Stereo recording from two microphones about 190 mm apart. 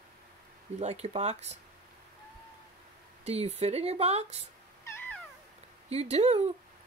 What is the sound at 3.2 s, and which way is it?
Speech, 35° right (ahead or behind).